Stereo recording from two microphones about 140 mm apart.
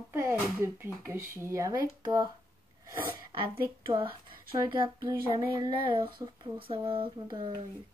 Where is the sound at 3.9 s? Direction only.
40° right (ahead or behind).